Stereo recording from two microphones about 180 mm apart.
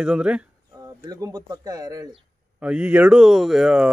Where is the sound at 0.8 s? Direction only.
20° right (ahead or behind).